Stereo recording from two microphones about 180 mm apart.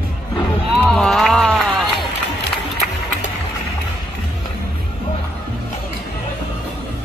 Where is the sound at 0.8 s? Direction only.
5° left (ahead or behind).